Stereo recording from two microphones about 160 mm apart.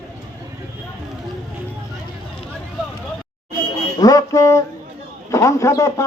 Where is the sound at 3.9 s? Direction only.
25° left (ahead or behind).